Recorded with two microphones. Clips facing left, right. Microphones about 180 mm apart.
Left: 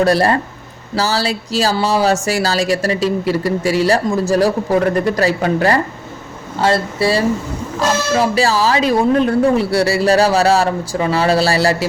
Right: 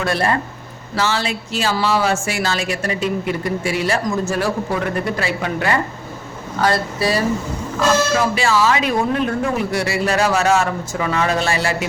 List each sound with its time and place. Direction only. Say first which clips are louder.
0.0 s speech: left 6 dB; 35° left (ahead or behind)
6.6 s speech: left 3 dB; 25° left (ahead or behind)